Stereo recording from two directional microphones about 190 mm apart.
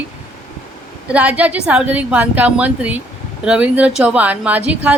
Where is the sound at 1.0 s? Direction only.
5° right (ahead or behind).